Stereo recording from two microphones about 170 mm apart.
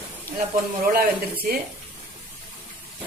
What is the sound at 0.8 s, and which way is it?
Speech, 60° right (ahead or behind).